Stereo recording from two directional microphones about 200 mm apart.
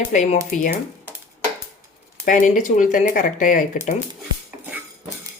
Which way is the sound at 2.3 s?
40° left (ahead or behind).